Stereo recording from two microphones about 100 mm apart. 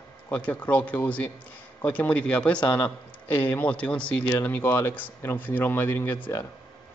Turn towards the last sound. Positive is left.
turn(degrees=25)  # may be behind; listen again after turning